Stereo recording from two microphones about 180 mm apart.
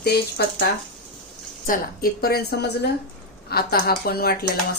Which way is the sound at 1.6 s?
50° left (ahead or behind).